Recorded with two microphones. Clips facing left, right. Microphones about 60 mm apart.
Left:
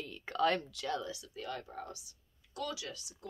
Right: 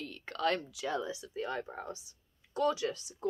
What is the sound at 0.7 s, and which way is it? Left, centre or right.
Speech, centre.